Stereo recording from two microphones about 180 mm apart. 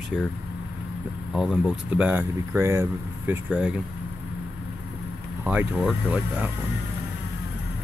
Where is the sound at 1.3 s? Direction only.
5° right (ahead or behind).